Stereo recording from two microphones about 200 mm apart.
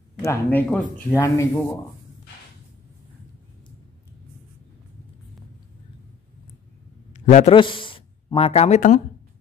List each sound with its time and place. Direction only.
0.2 s speech: 10° left (ahead or behind)
7.1 s a sound: 35° left (ahead or behind)
7.5 s speech: 25° left (ahead or behind)